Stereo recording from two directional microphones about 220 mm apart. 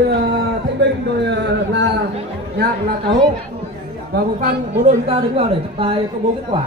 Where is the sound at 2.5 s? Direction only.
45° right (ahead or behind).